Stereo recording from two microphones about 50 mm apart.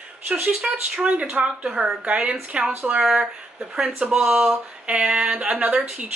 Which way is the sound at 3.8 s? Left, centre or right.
Right.